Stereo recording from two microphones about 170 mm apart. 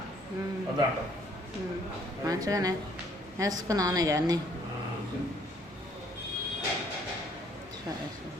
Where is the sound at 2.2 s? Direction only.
20° right (ahead or behind).